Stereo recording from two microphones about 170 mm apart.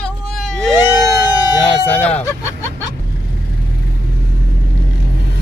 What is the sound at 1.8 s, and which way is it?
Speech, 10° left (ahead or behind).